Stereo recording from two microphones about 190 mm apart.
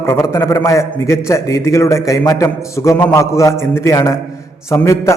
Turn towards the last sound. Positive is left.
turn(degrees=15)  # may be behind; listen again after turning